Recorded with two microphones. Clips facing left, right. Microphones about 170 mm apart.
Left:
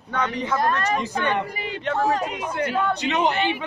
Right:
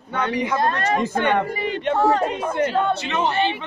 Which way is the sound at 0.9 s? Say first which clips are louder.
Right 4 dB; 50° right (ahead or behind).